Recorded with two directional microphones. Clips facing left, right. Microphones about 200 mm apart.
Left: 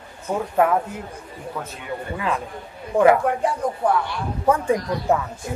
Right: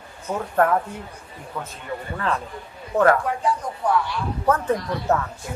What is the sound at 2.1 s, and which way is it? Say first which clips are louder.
Speech: even; 10° left (ahead or behind).